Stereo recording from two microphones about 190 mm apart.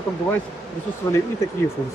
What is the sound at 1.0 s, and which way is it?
Speech, 15° left (ahead or behind).